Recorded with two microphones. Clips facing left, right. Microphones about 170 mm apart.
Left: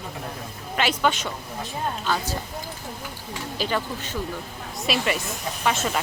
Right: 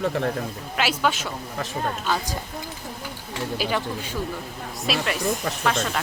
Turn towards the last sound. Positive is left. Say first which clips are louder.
# even
turn(degrees=5)  # may be behind; listen again after turning